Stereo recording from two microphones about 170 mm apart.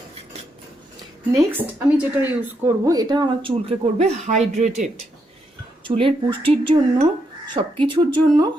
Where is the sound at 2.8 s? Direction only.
20° right (ahead or behind); by 4.7 s 40° right (ahead or behind).